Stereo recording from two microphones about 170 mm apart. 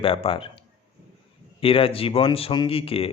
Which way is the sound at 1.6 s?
35° left (ahead or behind).